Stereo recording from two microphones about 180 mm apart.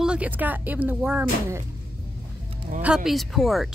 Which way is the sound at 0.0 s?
5° right (ahead or behind).